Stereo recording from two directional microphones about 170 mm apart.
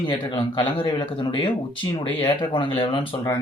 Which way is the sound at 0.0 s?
30° left (ahead or behind).